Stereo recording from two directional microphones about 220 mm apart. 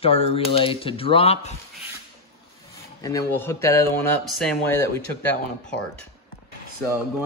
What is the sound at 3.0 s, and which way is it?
Speech, 10° left (ahead or behind).